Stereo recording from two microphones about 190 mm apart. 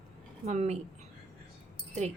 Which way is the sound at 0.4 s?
35° right (ahead or behind).